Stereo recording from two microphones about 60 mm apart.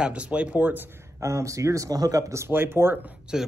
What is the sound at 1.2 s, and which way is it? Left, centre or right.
Speech, right.